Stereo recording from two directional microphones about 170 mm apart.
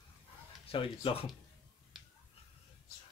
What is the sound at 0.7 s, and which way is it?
Speech, 30° left (ahead or behind).